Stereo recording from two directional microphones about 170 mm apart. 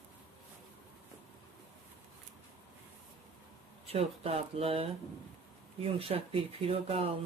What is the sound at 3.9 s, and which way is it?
Speech, 35° right (ahead or behind).